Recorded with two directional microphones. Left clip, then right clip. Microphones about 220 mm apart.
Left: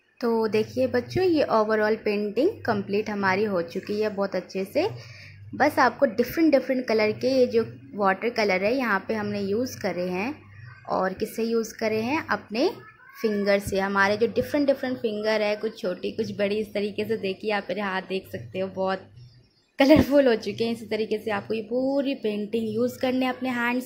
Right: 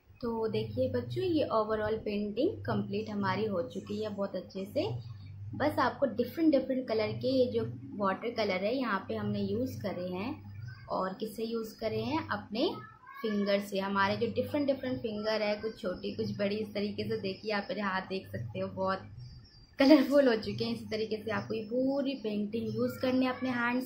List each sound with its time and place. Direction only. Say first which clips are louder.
0.2 s a woman's voice: left 10 dB; 35° left (ahead or behind)